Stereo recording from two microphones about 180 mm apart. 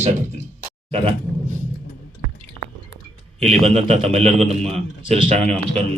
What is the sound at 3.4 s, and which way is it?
A man's voice, 35° right (ahead or behind).